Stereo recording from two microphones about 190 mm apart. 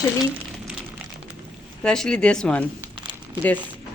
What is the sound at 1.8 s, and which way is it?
Speech, 5° left (ahead or behind).